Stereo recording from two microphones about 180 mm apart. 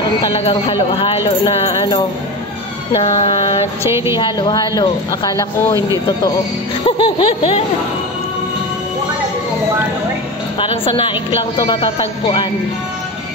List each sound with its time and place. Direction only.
0.4 s speech: 30° left (ahead or behind)
3.0 s speech: 40° left (ahead or behind)
3.9 s a woman's voice: 15° right (ahead or behind)
4.2 s a woman's voice: 25° left (ahead or behind)
7.0 s speech: 30° left (ahead or behind)
10.6 s a woman's voice: 30° left (ahead or behind)